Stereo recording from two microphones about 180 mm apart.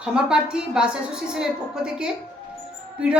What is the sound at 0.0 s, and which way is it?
A woman's voice, 5° right (ahead or behind).